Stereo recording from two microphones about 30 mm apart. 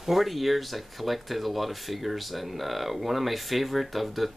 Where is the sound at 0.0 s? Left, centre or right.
Centre.